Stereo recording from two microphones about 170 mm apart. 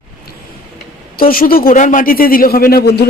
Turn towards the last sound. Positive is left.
turn(degrees=65)  # may be behind; listen again after turning